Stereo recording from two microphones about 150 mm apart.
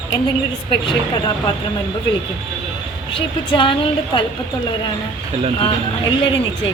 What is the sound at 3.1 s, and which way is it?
A woman's voice, 35° left (ahead or behind).